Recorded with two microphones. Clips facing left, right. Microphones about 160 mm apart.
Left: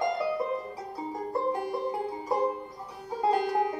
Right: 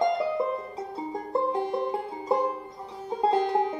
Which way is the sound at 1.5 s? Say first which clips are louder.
Right 3 dB; 20° right (ahead or behind).